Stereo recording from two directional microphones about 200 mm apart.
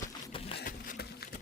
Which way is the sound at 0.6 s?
50° left (ahead or behind).